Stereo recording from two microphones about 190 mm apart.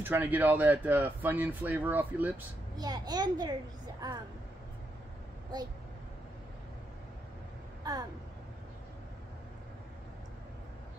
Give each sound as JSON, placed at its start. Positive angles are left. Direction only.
{"t": 0.0, "sound": "speech", "side_deg": -10}
{"t": 2.8, "sound": "a child's voice", "side_deg": -20}
{"t": 7.8, "sound": "speech", "side_deg": -20}